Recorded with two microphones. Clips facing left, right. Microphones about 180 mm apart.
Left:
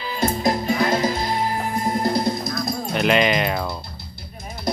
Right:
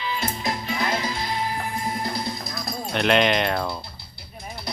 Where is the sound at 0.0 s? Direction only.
40° left (ahead or behind).